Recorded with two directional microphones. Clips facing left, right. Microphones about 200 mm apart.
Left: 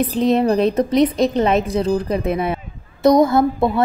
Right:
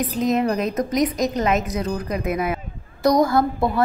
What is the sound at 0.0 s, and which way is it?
A woman's voice, 30° left (ahead or behind).